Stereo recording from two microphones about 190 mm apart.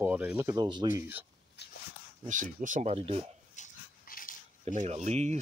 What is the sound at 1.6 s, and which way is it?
Dog, 60° left (ahead or behind).